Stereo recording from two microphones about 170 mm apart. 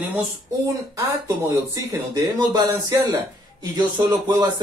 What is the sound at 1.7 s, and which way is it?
Speech, 20° right (ahead or behind).